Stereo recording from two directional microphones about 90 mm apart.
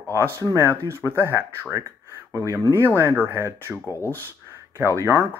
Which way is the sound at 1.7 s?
35° right (ahead or behind).